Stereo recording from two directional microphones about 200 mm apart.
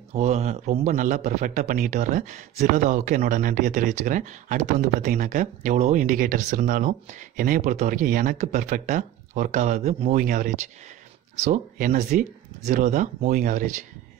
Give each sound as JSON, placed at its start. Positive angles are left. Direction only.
{"t": 0.1, "sound": "a man's voice", "side_deg": -35}